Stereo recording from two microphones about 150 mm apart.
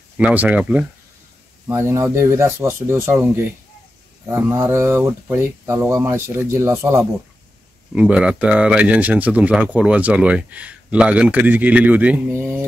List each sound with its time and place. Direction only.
0.2 s speech: 10° right (ahead or behind)
1.7 s speech: 20° right (ahead or behind)
7.9 s speech: 5° right (ahead or behind)